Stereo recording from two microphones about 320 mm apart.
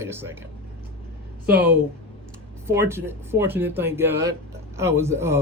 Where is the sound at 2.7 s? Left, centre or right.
Centre.